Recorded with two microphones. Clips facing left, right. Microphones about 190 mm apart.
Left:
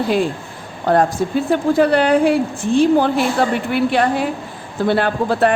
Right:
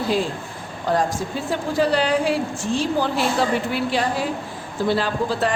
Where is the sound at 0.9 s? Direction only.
60° left (ahead or behind).